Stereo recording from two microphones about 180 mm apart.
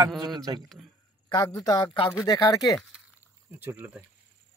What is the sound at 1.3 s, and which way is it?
Speech, 20° left (ahead or behind).